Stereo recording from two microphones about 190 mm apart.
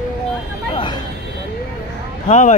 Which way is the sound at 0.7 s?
25° left (ahead or behind).